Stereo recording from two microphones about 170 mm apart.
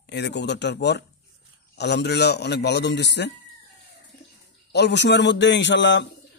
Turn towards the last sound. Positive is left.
turn(degrees=90)